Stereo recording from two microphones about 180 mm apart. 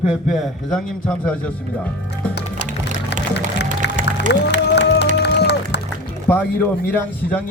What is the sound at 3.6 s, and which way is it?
Music, 45° right (ahead or behind).